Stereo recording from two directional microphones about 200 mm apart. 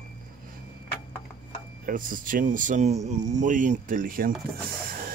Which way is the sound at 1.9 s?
45° right (ahead or behind).